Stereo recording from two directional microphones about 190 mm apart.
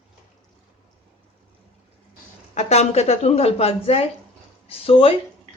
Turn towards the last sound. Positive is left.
turn(degrees=30)  # may be behind; listen again after turning